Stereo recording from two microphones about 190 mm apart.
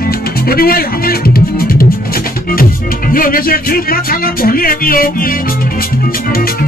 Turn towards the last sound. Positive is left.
turn(degrees=50)  # may be behind; listen again after turning